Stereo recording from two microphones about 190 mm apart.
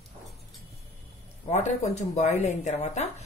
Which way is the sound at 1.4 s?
35° left (ahead or behind).